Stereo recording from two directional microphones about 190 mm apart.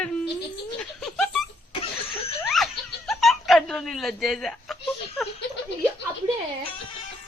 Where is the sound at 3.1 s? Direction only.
Centre (ahead or behind).